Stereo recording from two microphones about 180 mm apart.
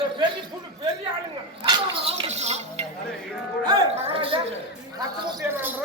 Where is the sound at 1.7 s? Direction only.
35° right (ahead or behind).